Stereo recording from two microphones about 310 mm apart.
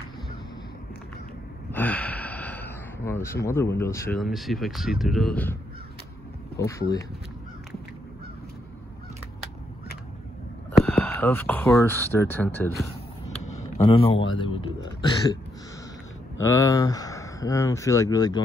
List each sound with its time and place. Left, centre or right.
1.7 s speech: centre
10.8 s speech: centre
13.4 s a sound: left
13.7 s speech: centre
16.3 s speech: centre